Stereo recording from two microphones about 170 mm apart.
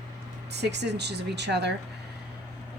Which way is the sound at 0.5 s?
85° right.